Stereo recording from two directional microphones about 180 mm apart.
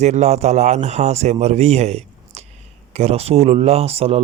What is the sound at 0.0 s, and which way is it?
Speech, 40° right (ahead or behind).